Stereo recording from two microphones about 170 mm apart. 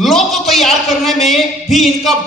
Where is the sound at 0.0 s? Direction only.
Centre (ahead or behind).